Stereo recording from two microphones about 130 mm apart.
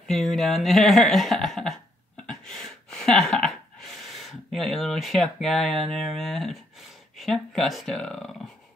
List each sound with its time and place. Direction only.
0.1 s speech: centre (ahead or behind)